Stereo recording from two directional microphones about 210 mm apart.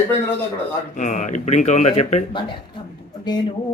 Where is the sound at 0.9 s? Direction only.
35° left (ahead or behind).